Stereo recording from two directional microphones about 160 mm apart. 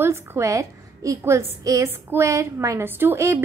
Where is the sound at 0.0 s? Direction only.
15° right (ahead or behind).